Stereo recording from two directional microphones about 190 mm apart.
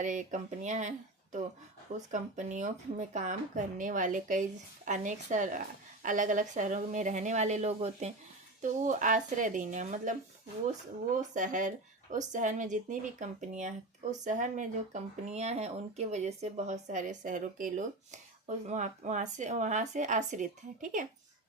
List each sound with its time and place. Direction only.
0.0 s speech: 40° right (ahead or behind)
11.2 s speech: 40° right (ahead or behind)